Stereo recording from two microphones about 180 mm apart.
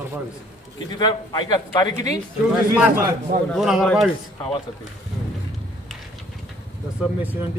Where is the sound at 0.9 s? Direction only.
25° left (ahead or behind).